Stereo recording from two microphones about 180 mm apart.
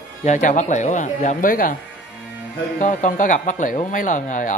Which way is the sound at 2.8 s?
45° left (ahead or behind).